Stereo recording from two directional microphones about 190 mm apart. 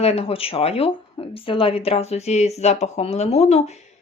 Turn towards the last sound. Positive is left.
turn(degrees=35)  # may be behind; listen again after turning